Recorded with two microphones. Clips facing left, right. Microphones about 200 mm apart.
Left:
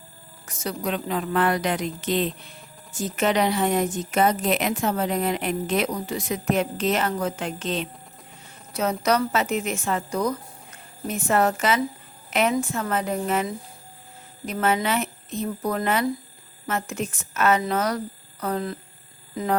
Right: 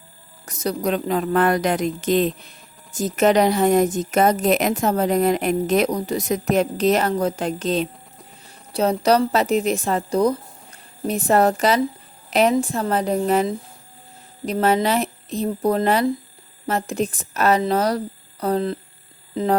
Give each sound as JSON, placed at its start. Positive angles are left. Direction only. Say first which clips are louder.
{"t": 0.4, "sound": "a woman's voice", "louder": "right 6 dB", "side_deg": -40}